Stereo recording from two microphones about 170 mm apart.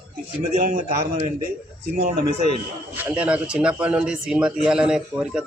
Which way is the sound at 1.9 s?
50° right (ahead or behind).